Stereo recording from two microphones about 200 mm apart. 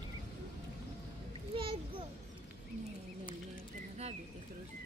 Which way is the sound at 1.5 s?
25° right (ahead or behind).